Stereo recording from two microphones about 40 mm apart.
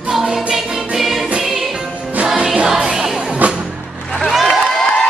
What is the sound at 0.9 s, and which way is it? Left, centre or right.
Music, centre.